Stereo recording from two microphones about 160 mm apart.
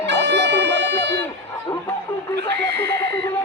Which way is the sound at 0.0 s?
90° right.